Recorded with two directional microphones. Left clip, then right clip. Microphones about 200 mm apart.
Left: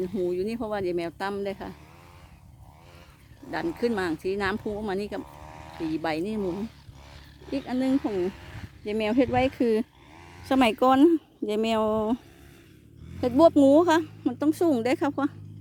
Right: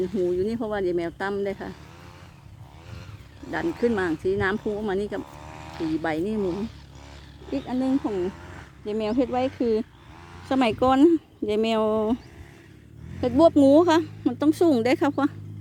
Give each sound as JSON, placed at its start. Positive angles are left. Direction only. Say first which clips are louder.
{"t": 0.0, "sound": "speech", "louder": "right 3 dB", "side_deg": 25}
{"t": 3.4, "sound": "speech", "louder": "right 3 dB", "side_deg": 25}
{"t": 7.4, "sound": "a sound", "louder": "right 2 dB", "side_deg": 50}
{"t": 7.8, "sound": "speech", "louder": "even", "side_deg": 50}
{"t": 10.5, "sound": "a woman's voice", "louder": "even", "side_deg": 25}
{"t": 13.2, "sound": "a woman's voice", "louder": "right 1 dB", "side_deg": 20}